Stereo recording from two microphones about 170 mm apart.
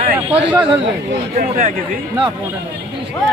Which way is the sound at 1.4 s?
50° right (ahead or behind).